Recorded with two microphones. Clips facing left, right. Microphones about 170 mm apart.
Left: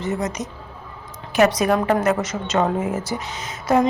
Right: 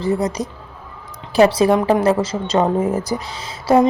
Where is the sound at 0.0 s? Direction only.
35° right (ahead or behind).